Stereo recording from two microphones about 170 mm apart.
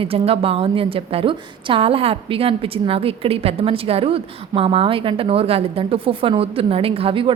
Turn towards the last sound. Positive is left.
turn(degrees=-30)  # may be behind; listen again after turning